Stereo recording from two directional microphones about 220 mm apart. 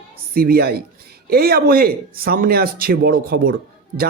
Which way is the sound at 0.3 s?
45° right (ahead or behind).